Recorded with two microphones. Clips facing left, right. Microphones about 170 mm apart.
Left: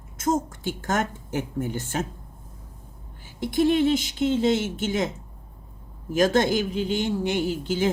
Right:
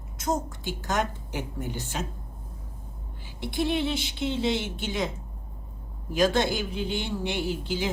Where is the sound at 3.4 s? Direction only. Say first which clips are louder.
Left 7 dB; 45° left (ahead or behind).